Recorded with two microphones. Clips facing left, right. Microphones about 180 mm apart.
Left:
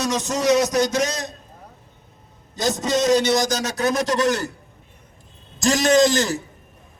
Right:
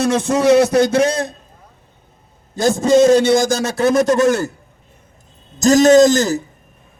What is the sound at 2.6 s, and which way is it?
A man's voice, 50° right (ahead or behind).